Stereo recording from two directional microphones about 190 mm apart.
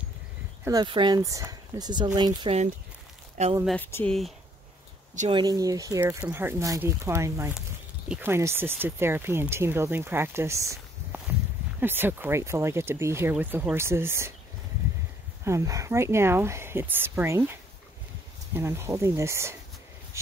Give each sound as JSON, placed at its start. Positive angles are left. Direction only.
{"t": 0.7, "sound": "speech", "side_deg": -25}
{"t": 3.6, "sound": "speech", "side_deg": 10}
{"t": 5.3, "sound": "speech", "side_deg": -20}
{"t": 15.4, "sound": "speech", "side_deg": -15}